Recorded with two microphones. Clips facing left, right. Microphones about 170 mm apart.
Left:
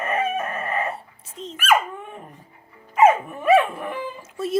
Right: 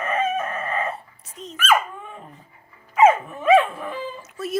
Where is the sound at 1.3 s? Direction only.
25° left (ahead or behind).